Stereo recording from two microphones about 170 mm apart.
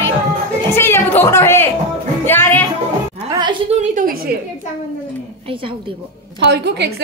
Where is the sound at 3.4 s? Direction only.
25° right (ahead or behind).